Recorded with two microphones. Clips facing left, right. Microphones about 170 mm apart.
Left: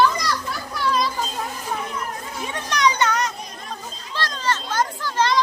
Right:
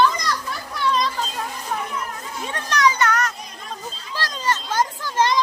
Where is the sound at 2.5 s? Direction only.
15° left (ahead or behind).